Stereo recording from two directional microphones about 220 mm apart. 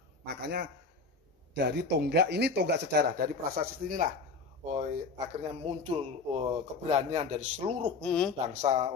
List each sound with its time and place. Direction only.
0.2 s a man's voice: 50° right (ahead or behind); by 7.9 s 30° right (ahead or behind)
8.0 s speech: 5° left (ahead or behind)
8.4 s speech: 30° right (ahead or behind)